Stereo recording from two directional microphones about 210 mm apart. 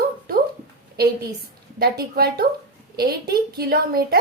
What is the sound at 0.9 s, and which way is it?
A woman's voice, 45° right (ahead or behind).